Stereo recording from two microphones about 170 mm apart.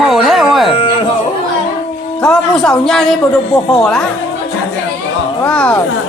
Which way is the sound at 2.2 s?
5° left (ahead or behind).